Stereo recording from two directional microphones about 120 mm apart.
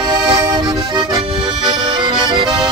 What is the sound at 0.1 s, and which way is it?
Accordion, 35° right (ahead or behind).